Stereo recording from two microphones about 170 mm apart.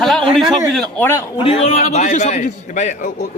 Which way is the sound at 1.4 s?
35° left (ahead or behind).